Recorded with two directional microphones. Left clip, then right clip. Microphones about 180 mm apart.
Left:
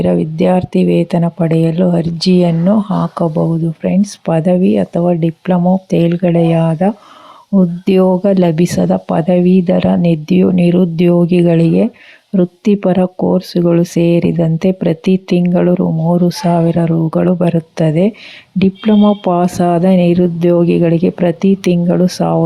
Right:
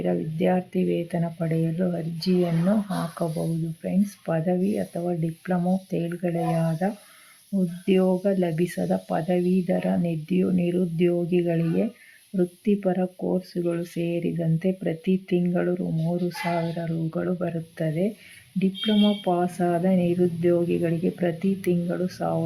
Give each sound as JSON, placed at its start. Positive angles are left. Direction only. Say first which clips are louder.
{"t": 0.0, "sound": "speech", "louder": "left 12 dB", "side_deg": 35}